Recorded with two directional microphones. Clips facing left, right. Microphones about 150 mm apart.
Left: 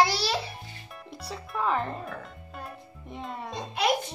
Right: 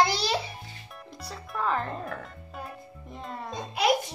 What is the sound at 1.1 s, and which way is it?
Speech, 5° left (ahead or behind).